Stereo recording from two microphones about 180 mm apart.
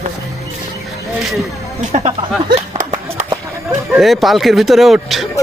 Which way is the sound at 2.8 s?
45° right (ahead or behind).